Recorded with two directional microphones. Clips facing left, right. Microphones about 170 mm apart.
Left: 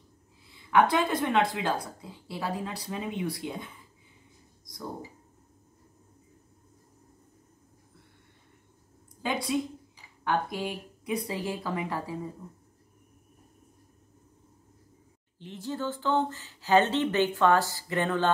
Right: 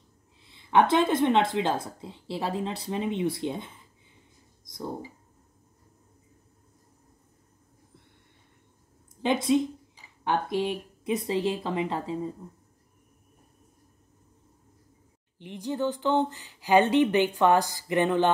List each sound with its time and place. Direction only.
0.5 s speech: 25° right (ahead or behind)
9.2 s speech: 25° right (ahead or behind)
15.3 s speech: 15° right (ahead or behind)